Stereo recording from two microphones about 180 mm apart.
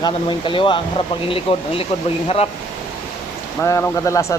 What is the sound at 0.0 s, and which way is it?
Speech, 25° left (ahead or behind).